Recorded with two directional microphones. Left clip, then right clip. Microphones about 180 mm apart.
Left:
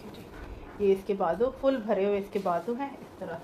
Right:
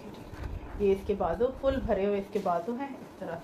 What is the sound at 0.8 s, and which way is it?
Speech, 30° left (ahead or behind).